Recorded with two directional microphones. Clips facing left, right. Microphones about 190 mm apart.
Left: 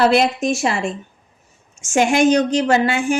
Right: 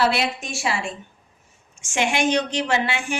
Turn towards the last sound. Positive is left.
turn(degrees=45)  # may be behind; listen again after turning